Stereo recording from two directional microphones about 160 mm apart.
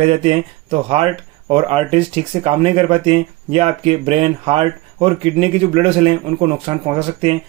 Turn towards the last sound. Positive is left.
turn(degrees=-35)  # may be behind; listen again after turning